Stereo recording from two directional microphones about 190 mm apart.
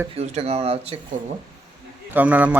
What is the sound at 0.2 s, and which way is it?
Speech, 35° right (ahead or behind).